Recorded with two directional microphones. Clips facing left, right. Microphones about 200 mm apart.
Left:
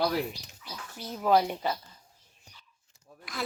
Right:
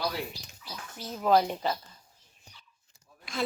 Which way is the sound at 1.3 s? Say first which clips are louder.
Even; 10° left (ahead or behind).